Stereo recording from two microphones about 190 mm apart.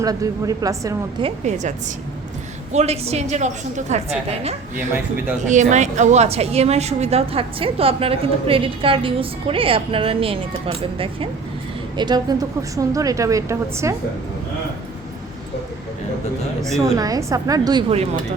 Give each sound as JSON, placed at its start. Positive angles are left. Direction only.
{"t": 0.0, "sound": "a woman's voice", "side_deg": -20}
{"t": 1.2, "sound": "a woman's voice", "side_deg": -40}
{"t": 2.7, "sound": "a woman's voice", "side_deg": -35}
{"t": 16.8, "sound": "a woman's voice", "side_deg": -15}